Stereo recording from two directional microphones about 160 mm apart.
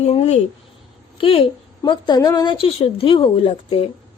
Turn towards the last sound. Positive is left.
turn(degrees=35)  # may be behind; listen again after turning